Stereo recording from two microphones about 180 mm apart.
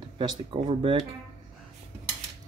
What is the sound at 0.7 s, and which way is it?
Speech, 30° right (ahead or behind).